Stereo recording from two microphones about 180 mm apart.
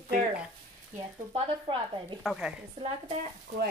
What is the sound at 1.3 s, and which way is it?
Speech, 30° right (ahead or behind).